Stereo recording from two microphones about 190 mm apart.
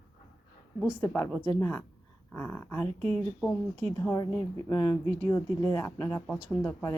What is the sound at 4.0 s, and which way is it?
Speech, 15° left (ahead or behind).